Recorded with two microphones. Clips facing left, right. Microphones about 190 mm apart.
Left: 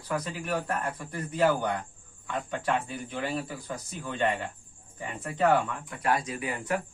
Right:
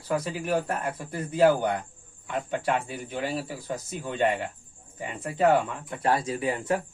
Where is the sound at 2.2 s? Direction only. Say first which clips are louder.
Right 3 dB; 20° right (ahead or behind).